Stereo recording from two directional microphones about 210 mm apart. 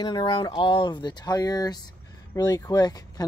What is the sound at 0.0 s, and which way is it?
Speech, 20° left (ahead or behind).